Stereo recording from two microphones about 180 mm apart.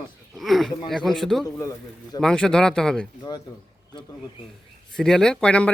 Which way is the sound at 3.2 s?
20° left (ahead or behind).